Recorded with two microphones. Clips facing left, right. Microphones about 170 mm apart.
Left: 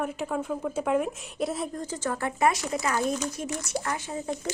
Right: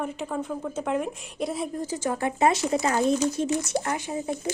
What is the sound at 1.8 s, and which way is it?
Speech, 15° right (ahead or behind).